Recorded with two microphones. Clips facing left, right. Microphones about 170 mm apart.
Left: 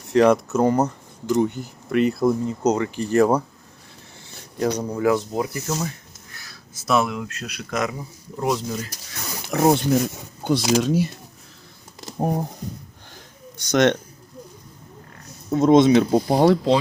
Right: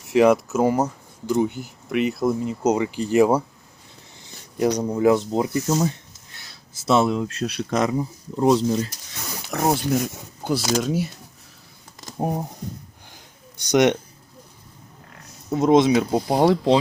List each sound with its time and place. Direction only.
0.1 s speech: 5° right (ahead or behind)
4.6 s speech: 15° right (ahead or behind); by 8.9 s 30° right (ahead or behind)
9.5 s speech: centre (ahead or behind)
12.2 s speech: centre (ahead or behind)
13.6 s speech: 15° right (ahead or behind)
15.5 s speech: 5° right (ahead or behind)